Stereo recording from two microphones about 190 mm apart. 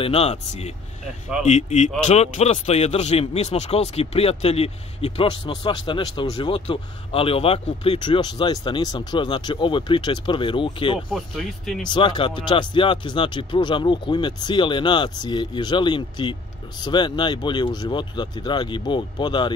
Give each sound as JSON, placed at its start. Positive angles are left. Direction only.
{"t": 0.0, "sound": "speech", "side_deg": 30}
{"t": 11.1, "sound": "speech", "side_deg": 0}
{"t": 11.9, "sound": "speech", "side_deg": 25}